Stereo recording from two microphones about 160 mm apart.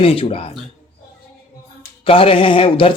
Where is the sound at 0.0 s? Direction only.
35° left (ahead or behind).